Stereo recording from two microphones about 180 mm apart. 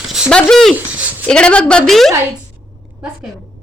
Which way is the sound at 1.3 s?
5° left (ahead or behind).